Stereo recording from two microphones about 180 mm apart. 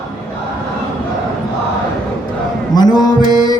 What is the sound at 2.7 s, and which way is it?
Music, 20° left (ahead or behind).